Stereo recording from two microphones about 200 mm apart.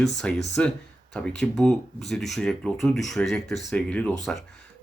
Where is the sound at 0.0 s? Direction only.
Centre (ahead or behind).